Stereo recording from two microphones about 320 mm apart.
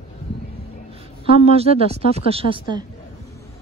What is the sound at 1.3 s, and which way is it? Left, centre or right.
Speech, centre.